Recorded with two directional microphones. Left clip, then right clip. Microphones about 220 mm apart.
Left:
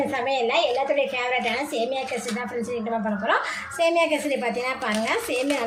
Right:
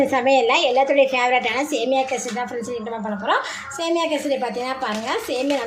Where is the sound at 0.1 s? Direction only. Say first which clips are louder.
Right 6 dB; 30° right (ahead or behind).